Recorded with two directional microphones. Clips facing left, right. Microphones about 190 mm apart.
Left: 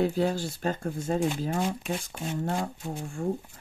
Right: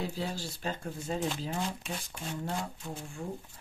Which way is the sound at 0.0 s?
60° left (ahead or behind).